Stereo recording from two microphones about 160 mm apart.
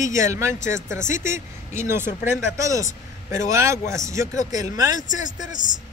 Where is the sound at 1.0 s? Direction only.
50° left (ahead or behind).